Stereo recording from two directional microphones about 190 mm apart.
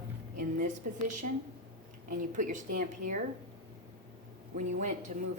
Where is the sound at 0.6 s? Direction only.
40° right (ahead or behind).